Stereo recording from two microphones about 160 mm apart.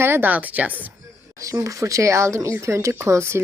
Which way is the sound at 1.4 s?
20° right (ahead or behind).